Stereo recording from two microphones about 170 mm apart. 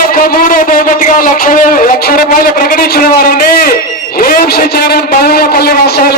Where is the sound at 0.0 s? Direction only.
55° left (ahead or behind).